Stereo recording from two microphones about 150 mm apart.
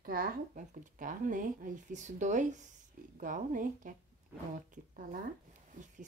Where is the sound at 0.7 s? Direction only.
60° right (ahead or behind).